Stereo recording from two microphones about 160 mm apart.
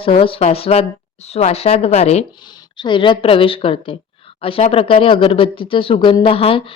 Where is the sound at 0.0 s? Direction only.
35° left (ahead or behind).